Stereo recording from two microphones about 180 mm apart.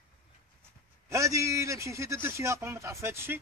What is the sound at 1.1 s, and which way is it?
A man's voice, 15° right (ahead or behind).